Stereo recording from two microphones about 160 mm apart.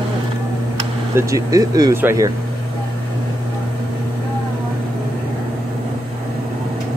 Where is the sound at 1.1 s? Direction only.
20° right (ahead or behind).